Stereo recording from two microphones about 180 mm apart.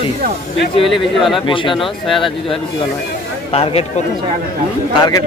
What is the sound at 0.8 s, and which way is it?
Speech, centre (ahead or behind).